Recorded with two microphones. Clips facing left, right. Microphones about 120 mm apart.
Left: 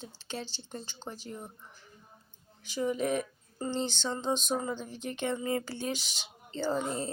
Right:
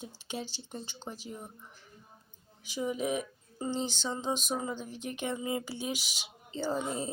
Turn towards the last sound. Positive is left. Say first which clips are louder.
# left 1 dB
turn(degrees=-10)  # may be behind; listen again after turning